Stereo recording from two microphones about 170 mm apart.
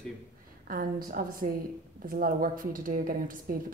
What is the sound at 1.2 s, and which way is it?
A woman's voice, 60° right (ahead or behind).